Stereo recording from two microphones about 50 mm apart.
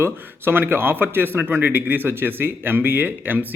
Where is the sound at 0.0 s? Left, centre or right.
Right.